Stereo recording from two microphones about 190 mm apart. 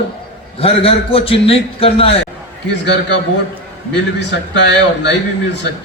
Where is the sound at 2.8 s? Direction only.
65° left (ahead or behind).